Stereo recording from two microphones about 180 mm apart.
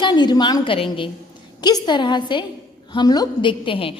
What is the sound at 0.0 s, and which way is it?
A woman's voice, 25° left (ahead or behind).